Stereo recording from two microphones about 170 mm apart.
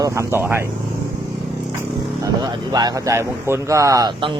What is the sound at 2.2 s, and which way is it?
Speech, 20° right (ahead or behind).